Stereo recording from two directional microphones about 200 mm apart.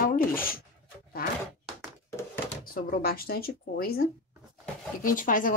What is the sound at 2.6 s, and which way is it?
Speech, 45° left (ahead or behind).